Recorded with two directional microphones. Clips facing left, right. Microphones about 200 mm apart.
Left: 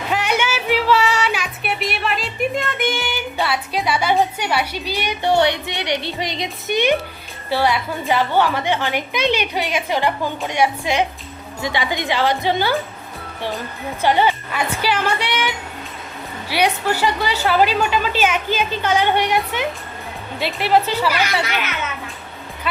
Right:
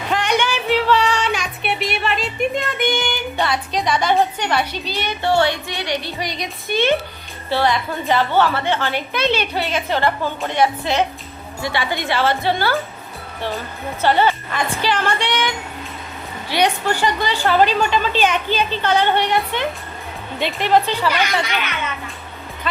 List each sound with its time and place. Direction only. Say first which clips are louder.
0.1 s music: right 1 dB; 5° left (ahead or behind)
7.5 s a woman's voice: even; 10° left (ahead or behind)
14.0 s a woman's voice: even; 15° left (ahead or behind)
22.7 s speech: even; 10° left (ahead or behind)